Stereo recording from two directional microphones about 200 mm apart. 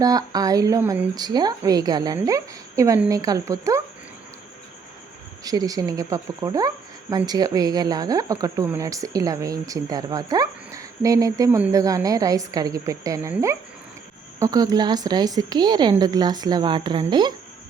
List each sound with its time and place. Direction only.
0.0 s speech: 20° right (ahead or behind)
5.4 s a woman's voice: 20° right (ahead or behind)